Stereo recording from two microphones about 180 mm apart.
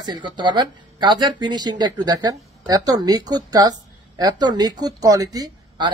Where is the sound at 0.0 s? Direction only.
25° right (ahead or behind).